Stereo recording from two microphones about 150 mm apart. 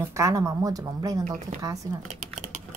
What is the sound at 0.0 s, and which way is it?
A woman's voice, 20° right (ahead or behind).